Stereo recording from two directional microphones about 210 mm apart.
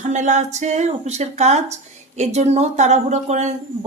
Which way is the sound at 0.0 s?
35° right (ahead or behind).